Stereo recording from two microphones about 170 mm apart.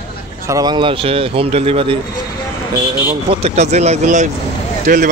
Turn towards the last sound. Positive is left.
turn(degrees=-55)  # may be behind; listen again after turning